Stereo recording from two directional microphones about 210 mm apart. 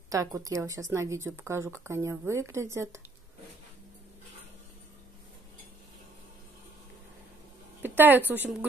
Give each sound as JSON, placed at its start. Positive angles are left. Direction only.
{"t": 0.1, "sound": "speech", "side_deg": -15}
{"t": 7.8, "sound": "a sound", "side_deg": -10}
{"t": 8.3, "sound": "speech", "side_deg": -10}